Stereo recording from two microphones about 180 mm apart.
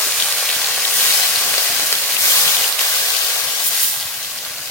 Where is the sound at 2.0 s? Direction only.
Centre (ahead or behind).